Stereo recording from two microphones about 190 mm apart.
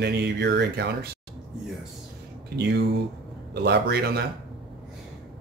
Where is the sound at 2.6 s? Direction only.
65° right (ahead or behind).